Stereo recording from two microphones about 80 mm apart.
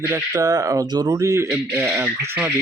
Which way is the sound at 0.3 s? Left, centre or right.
Right.